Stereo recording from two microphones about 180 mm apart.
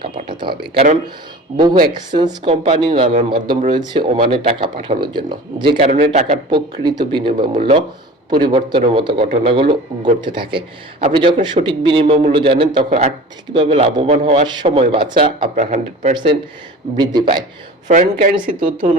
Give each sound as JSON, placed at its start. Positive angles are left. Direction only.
{"t": 0.0, "sound": "a man's voice", "side_deg": -25}
{"t": 2.1, "sound": "a man's voice", "side_deg": -25}
{"t": 6.1, "sound": "a man's voice", "side_deg": -40}
{"t": 6.5, "sound": "a man's voice", "side_deg": -25}
{"t": 16.1, "sound": "a man's voice", "side_deg": -30}
{"t": 17.8, "sound": "speech", "side_deg": -45}